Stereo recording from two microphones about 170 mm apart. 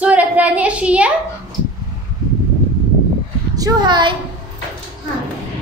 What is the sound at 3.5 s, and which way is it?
Speech, 25° right (ahead or behind).